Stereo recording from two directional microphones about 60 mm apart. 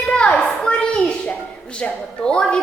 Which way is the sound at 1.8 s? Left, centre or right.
Centre.